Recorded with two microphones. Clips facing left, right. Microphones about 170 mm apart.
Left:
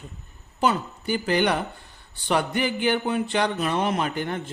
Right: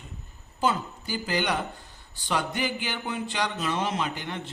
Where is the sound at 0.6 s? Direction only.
65° left (ahead or behind); by 4.5 s 50° left (ahead or behind).